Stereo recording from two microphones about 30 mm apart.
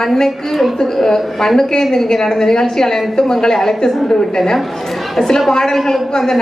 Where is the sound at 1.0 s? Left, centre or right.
Centre.